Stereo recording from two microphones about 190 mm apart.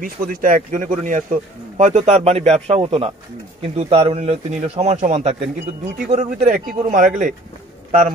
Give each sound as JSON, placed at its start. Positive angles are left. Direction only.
{"t": 0.0, "sound": "a man's voice", "side_deg": -45}